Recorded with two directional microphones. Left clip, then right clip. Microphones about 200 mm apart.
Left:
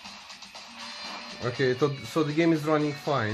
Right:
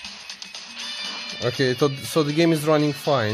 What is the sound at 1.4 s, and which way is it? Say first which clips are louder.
Speech: right 4 dB; 55° right (ahead or behind).